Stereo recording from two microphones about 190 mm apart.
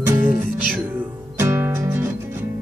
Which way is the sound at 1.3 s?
15° right (ahead or behind).